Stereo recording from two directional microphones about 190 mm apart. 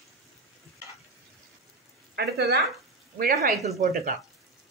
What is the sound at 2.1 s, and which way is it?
Speech, 60° right (ahead or behind).